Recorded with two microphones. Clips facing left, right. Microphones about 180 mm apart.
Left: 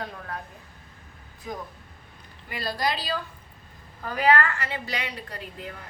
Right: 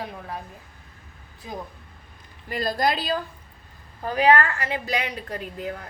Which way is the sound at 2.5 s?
45° right (ahead or behind).